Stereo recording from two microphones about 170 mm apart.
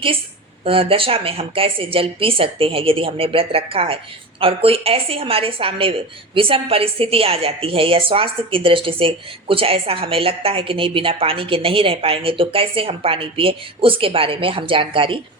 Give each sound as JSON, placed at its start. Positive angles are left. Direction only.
{"t": 0.6, "sound": "a woman's voice", "side_deg": -35}